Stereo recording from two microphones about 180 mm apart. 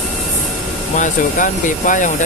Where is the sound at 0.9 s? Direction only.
45° left (ahead or behind).